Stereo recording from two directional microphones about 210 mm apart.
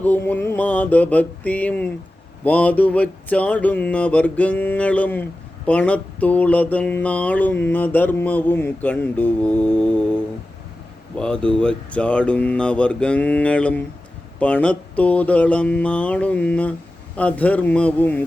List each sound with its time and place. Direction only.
0.0 s mantra: 10° left (ahead or behind)
11.2 s speech: 5° left (ahead or behind)
14.3 s mantra: 5° left (ahead or behind)